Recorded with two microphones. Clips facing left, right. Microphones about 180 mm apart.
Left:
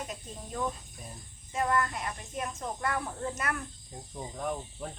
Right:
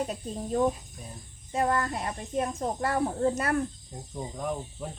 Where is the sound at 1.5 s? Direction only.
35° right (ahead or behind).